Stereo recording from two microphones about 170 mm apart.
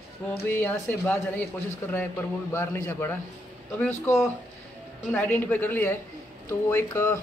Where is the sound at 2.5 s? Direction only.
15° left (ahead or behind).